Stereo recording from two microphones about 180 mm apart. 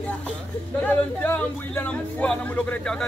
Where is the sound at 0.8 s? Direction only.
10° left (ahead or behind).